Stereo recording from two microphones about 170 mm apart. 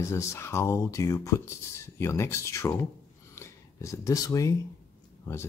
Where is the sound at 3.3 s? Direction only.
15° left (ahead or behind).